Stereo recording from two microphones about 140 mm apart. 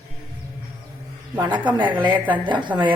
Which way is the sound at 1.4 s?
30° right (ahead or behind).